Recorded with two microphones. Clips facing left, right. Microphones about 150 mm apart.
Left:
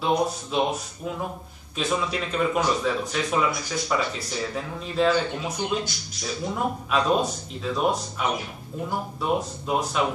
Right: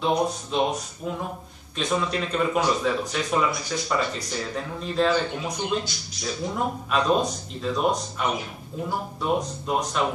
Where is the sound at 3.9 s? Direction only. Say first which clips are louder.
Even; 5° left (ahead or behind).